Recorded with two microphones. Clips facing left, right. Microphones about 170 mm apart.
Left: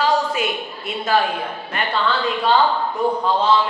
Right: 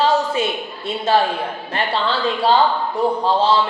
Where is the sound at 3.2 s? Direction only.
30° right (ahead or behind).